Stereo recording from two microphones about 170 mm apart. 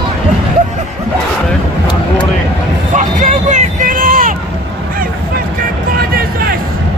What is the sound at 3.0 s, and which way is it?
Vehicle, 50° right (ahead or behind).